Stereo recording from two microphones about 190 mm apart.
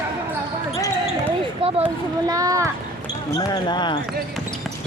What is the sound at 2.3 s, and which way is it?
Speech, 20° right (ahead or behind).